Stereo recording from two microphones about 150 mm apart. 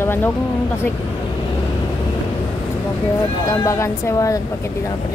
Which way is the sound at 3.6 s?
20° left (ahead or behind).